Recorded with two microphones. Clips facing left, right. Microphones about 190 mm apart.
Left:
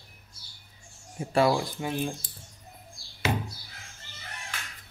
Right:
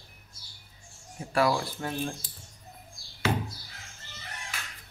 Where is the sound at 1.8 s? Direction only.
10° left (ahead or behind).